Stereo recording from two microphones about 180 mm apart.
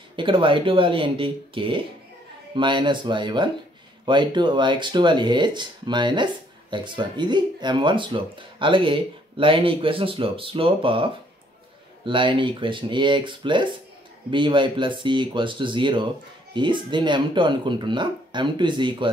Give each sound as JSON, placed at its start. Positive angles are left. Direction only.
{"t": 0.1, "sound": "speech", "side_deg": -25}